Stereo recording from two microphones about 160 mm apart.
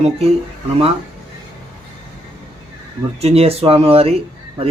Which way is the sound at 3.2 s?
40° right (ahead or behind).